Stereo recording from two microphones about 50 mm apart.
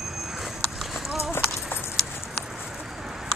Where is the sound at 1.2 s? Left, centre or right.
Left.